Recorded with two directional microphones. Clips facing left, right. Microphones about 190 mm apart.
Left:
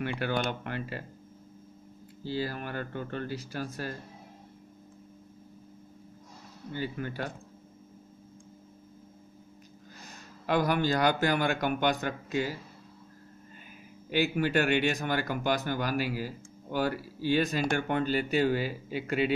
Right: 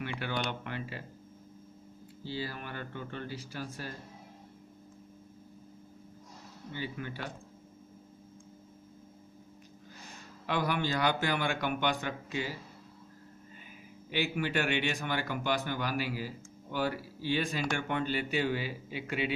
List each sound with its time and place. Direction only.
0.0 s speech: 50° left (ahead or behind)
2.2 s speech: 45° left (ahead or behind)
6.7 s speech: 45° left (ahead or behind)
10.4 s speech: 45° left (ahead or behind)
14.1 s speech: 45° left (ahead or behind)